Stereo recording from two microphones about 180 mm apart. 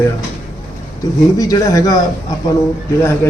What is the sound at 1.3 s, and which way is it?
Speech, 20° left (ahead or behind).